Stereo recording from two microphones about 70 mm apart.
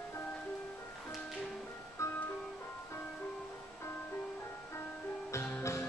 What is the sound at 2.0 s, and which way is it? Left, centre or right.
Music, left.